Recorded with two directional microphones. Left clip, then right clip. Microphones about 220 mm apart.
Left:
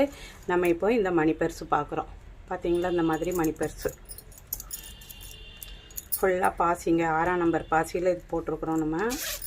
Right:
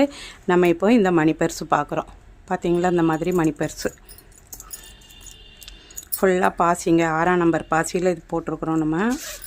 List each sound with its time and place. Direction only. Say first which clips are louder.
0.0 s speech: right 5 dB; 50° right (ahead or behind)
6.1 s speech: right 6 dB; 50° right (ahead or behind)